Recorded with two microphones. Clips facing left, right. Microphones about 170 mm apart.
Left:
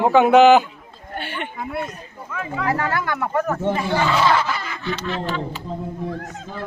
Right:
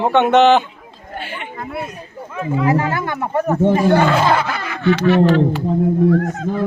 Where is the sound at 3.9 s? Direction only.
55° right (ahead or behind).